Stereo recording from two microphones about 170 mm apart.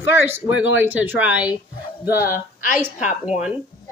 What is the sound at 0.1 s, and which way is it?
Speech, 10° right (ahead or behind).